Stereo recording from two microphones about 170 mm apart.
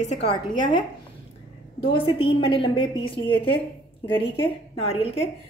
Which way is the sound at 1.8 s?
30° left (ahead or behind).